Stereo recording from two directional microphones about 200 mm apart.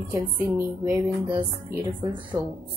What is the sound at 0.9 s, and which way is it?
Music, 20° right (ahead or behind).